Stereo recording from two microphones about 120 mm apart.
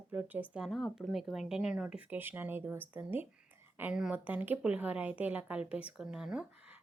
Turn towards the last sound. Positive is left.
turn(degrees=-10)  # may be behind; listen again after turning